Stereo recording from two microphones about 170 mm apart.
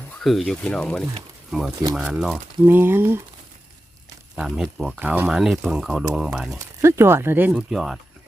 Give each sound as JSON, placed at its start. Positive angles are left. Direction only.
{"t": 0.2, "sound": "speech", "side_deg": 0}
{"t": 2.6, "sound": "speech", "side_deg": -10}
{"t": 4.4, "sound": "speech", "side_deg": -5}
{"t": 6.6, "sound": "speech", "side_deg": -15}